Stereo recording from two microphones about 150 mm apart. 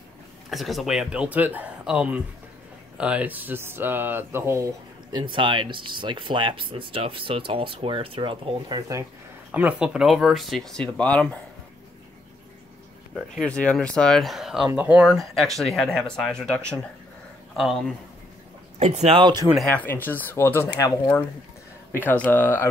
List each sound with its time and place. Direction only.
0.5 s speech: centre (ahead or behind); by 4.6 s 15° right (ahead or behind)
5.1 s speech: 30° right (ahead or behind)
9.5 s speech: 10° right (ahead or behind); by 11.2 s 10° left (ahead or behind)
13.1 s speech: 5° left (ahead or behind)
18.8 s speech: 45° right (ahead or behind)
19.2 s speech: 25° right (ahead or behind)
19.7 s speech: 10° left (ahead or behind)